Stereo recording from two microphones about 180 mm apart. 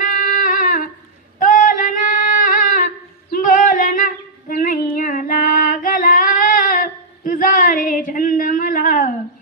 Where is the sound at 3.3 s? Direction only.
50° left (ahead or behind).